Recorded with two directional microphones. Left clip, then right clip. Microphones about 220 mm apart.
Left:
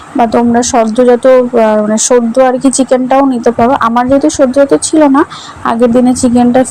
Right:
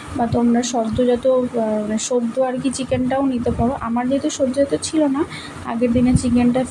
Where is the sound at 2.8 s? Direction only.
30° left (ahead or behind).